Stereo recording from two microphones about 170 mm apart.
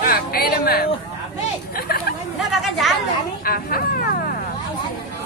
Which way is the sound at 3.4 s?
60° left (ahead or behind).